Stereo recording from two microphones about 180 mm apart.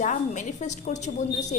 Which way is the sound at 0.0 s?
45° left (ahead or behind).